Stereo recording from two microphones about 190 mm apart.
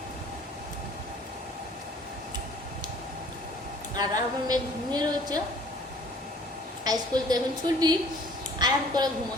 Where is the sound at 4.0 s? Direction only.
20° right (ahead or behind).